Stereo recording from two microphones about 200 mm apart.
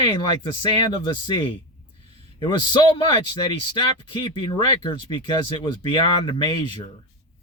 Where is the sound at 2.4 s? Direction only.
20° left (ahead or behind).